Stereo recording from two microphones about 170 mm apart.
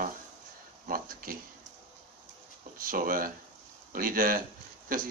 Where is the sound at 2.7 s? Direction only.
55° right (ahead or behind).